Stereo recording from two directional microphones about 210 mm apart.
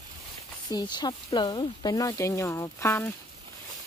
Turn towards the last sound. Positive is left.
turn(degrees=10)  # may be behind; listen again after turning